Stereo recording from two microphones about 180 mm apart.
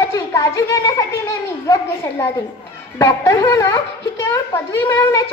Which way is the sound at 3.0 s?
15° left (ahead or behind).